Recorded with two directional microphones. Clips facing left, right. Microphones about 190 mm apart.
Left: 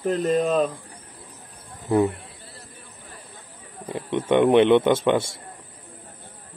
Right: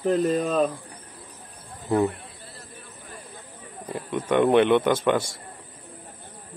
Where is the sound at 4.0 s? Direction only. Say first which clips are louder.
Left 2 dB; 25° left (ahead or behind).